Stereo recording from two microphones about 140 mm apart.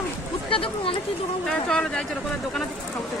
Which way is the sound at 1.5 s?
5° left (ahead or behind).